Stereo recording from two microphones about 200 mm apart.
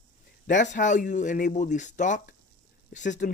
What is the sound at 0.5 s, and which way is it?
Speech, 40° left (ahead or behind).